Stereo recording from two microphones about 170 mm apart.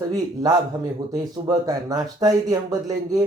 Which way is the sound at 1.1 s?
20° right (ahead or behind).